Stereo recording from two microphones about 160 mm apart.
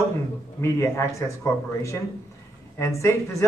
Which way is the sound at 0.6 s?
15° left (ahead or behind).